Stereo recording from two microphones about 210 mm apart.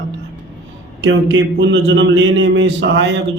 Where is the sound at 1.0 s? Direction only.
60° right (ahead or behind).